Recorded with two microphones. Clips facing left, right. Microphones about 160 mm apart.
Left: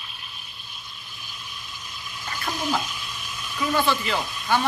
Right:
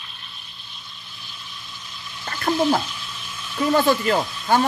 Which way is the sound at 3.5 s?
45° right (ahead or behind).